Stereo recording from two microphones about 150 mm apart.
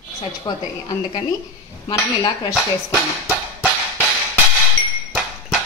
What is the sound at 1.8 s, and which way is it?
Speech, 30° left (ahead or behind).